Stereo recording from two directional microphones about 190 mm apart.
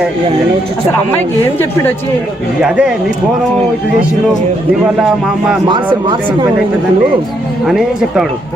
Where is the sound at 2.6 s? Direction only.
5° right (ahead or behind).